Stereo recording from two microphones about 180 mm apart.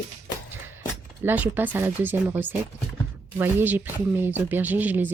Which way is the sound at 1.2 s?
10° right (ahead or behind).